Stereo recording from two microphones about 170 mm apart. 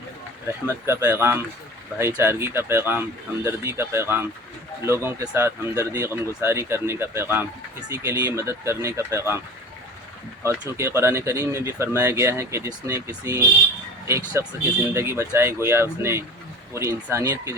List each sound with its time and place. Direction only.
0.4 s speech: 15° right (ahead or behind)
10.4 s speech: 15° right (ahead or behind)